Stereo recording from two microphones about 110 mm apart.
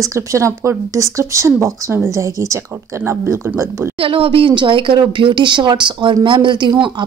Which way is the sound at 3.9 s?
60° right (ahead or behind).